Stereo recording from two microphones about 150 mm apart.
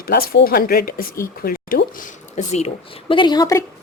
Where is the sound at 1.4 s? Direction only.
80° left.